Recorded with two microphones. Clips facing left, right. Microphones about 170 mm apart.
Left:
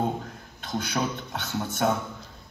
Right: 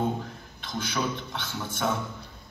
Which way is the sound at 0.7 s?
45° left (ahead or behind).